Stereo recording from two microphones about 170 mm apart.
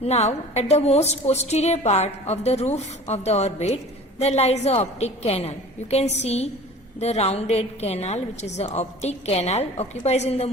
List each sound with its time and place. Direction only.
0.0 s a woman's voice: 40° left (ahead or behind)